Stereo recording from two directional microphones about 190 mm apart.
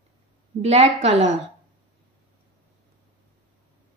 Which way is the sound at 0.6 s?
35° right (ahead or behind).